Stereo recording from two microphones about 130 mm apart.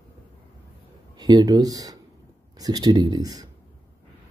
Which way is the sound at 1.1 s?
30° right (ahead or behind).